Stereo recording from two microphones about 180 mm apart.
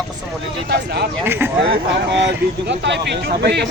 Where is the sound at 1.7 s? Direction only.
75° right (ahead or behind).